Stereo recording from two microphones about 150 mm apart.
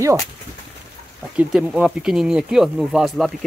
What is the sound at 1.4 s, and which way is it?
Speech, 5° right (ahead or behind).